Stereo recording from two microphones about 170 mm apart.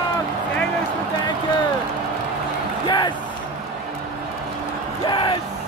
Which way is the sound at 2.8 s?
25° left (ahead or behind).